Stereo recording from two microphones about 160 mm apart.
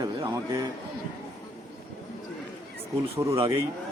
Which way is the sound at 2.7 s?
20° right (ahead or behind).